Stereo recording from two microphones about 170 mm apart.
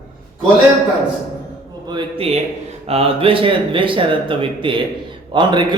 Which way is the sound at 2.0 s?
35° right (ahead or behind).